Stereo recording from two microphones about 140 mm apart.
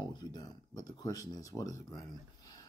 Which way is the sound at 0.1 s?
30° left (ahead or behind).